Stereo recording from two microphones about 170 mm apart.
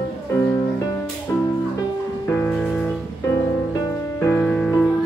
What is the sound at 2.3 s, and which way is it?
Music, 15° left (ahead or behind).